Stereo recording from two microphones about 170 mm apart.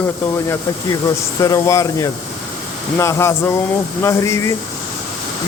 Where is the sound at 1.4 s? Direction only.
20° left (ahead or behind).